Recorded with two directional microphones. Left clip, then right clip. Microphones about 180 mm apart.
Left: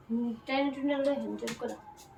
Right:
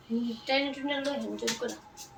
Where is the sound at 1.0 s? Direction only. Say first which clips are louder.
Left 2 dB; 65° left (ahead or behind).